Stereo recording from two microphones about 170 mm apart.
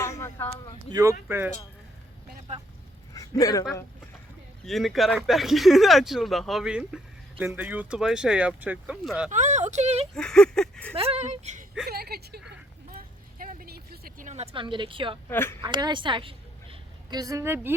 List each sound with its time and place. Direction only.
0.0 s a sound: 15° left (ahead or behind)
0.9 s speech: 20° right (ahead or behind)
3.2 s speech: 20° left (ahead or behind)
4.6 s speech: centre (ahead or behind)
9.3 s speech: 45° right (ahead or behind)
10.2 s speech: 5° left (ahead or behind)
10.9 s speech: 35° right (ahead or behind)
11.9 s speech: 65° right (ahead or behind)
12.5 s a sound: 60° right (ahead or behind); by 15.2 s 30° right (ahead or behind)
15.3 s speech: 15° left (ahead or behind)
15.6 s a woman's voice: 25° right (ahead or behind)